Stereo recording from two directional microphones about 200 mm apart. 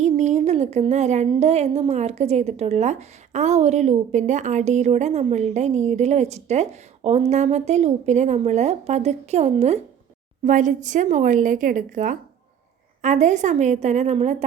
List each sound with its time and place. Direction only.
0.0 s speech: 35° right (ahead or behind)